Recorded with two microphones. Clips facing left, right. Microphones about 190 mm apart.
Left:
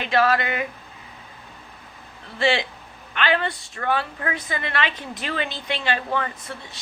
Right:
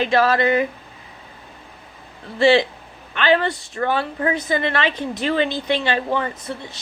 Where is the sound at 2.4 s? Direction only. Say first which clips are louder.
Right 7 dB; 35° right (ahead or behind).